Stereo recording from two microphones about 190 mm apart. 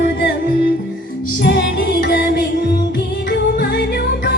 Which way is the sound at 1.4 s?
70° left (ahead or behind).